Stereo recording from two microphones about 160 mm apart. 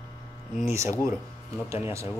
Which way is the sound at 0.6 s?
20° right (ahead or behind).